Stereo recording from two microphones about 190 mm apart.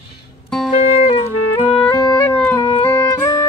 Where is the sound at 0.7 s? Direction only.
30° left (ahead or behind).